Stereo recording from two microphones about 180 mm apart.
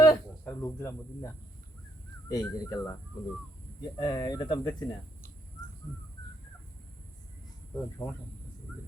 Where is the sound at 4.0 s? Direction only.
25° left (ahead or behind).